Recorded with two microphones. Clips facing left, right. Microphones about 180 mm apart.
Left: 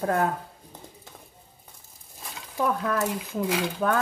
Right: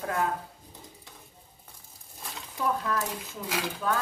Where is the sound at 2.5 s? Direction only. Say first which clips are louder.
Left 4 dB; 60° left (ahead or behind).